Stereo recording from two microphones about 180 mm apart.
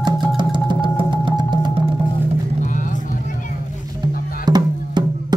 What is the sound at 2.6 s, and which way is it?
Vehicle, 45° left (ahead or behind).